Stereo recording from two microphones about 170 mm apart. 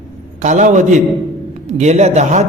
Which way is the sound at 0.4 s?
45° right (ahead or behind).